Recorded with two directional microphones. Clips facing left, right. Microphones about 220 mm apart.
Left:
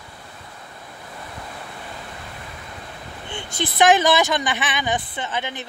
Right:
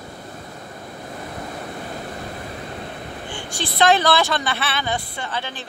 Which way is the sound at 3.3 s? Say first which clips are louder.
Left 2 dB; 20° left (ahead or behind).